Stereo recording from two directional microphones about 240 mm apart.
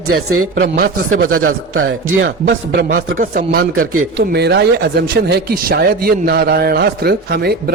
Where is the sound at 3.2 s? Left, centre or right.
Right.